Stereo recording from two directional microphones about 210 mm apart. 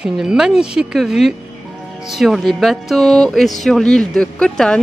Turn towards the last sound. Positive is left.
turn(degrees=5)  # may be behind; listen again after turning